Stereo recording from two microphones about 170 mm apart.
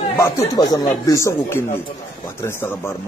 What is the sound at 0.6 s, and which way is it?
A man's voice, 20° left (ahead or behind).